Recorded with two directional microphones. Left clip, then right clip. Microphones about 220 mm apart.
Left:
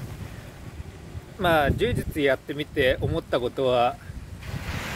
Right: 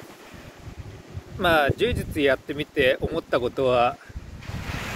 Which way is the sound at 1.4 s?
5° right (ahead or behind).